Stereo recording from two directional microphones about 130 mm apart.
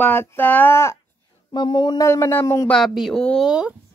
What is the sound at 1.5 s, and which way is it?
Mantra, 35° left (ahead or behind).